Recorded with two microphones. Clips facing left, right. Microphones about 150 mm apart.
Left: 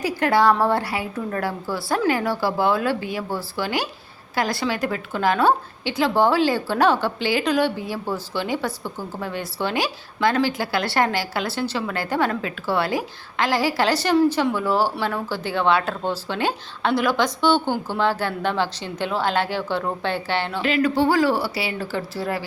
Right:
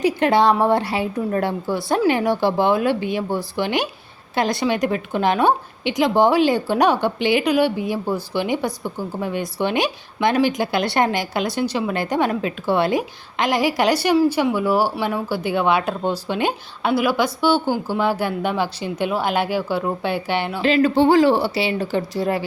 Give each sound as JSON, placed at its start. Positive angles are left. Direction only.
{"t": 0.0, "sound": "a woman's voice", "side_deg": -20}
{"t": 20.6, "sound": "a woman's voice", "side_deg": -30}